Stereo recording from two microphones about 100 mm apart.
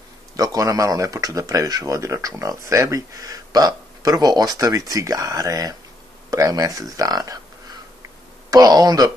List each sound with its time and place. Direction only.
0.4 s speech: 35° right (ahead or behind)
8.5 s speech: 40° right (ahead or behind)